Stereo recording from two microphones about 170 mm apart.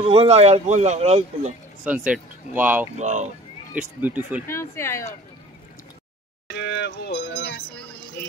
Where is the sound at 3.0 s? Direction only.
45° right (ahead or behind).